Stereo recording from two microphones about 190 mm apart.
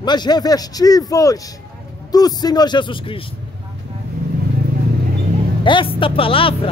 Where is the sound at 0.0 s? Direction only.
20° left (ahead or behind).